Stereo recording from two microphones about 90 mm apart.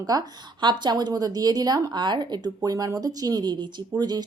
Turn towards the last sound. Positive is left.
turn(degrees=-50)  # may be behind; listen again after turning